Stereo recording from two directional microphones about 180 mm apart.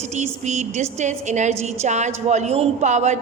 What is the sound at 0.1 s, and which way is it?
A woman's voice, 40° right (ahead or behind).